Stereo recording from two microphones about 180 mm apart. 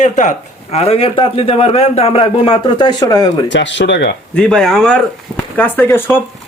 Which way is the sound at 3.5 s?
85° left.